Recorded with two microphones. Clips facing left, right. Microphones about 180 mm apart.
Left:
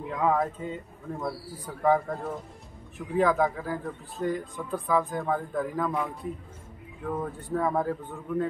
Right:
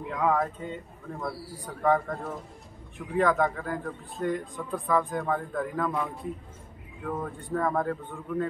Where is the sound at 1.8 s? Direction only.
Centre (ahead or behind).